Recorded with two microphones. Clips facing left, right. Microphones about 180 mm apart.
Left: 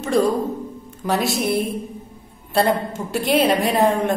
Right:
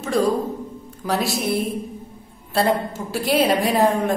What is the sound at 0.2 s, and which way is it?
A woman's voice, centre (ahead or behind).